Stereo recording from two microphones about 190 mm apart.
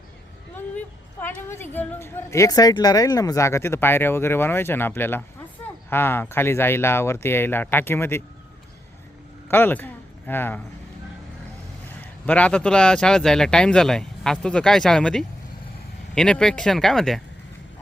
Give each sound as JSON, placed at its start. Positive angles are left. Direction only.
{"t": 1.2, "sound": "a woman's voice", "side_deg": 10}
{"t": 9.5, "sound": "a man's voice", "side_deg": 10}
{"t": 12.2, "sound": "speech", "side_deg": 5}